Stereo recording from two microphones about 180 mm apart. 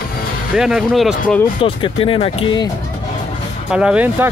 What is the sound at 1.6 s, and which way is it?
Speech, 30° left (ahead or behind).